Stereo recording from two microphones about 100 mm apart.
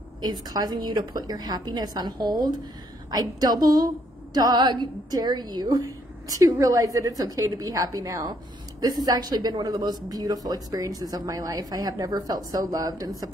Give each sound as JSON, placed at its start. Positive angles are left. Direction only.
{"t": 0.2, "sound": "speech", "side_deg": -40}